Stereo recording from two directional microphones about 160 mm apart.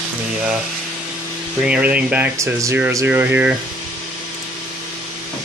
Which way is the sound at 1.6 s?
10° right (ahead or behind).